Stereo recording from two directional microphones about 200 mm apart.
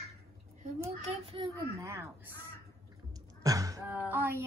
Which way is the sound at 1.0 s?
30° right (ahead or behind).